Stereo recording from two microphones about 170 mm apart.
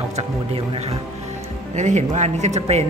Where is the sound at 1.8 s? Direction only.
45° right (ahead or behind).